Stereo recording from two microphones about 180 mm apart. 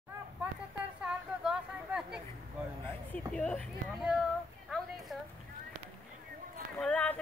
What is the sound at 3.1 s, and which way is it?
Speech, 5° left (ahead or behind).